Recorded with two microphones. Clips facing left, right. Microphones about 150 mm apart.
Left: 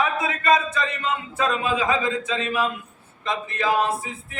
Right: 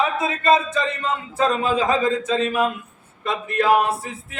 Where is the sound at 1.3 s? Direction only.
35° right (ahead or behind).